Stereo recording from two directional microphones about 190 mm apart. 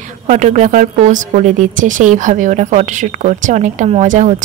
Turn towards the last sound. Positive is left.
turn(degrees=-40)  # may be behind; listen again after turning